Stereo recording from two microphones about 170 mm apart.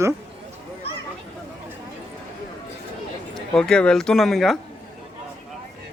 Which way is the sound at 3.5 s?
5° left (ahead or behind).